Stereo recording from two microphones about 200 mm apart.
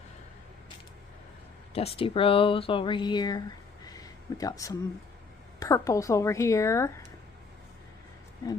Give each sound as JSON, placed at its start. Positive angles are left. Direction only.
{"t": 1.7, "sound": "speech", "side_deg": 30}
{"t": 3.8, "sound": "a sound", "side_deg": 20}
{"t": 5.5, "sound": "a woman's voice", "side_deg": 15}